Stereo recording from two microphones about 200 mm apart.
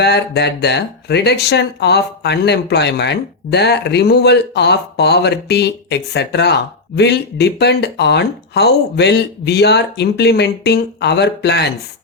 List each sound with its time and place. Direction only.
0.0 s speech: 55° left (ahead or behind)